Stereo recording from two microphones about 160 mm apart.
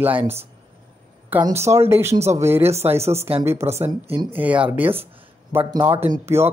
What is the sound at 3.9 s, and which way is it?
Speech, 30° right (ahead or behind).